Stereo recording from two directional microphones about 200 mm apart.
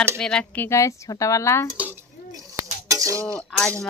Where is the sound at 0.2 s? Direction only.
5° left (ahead or behind).